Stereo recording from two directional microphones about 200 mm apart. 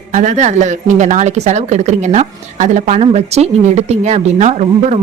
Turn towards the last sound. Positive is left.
turn(degrees=-35)  # may be behind; listen again after turning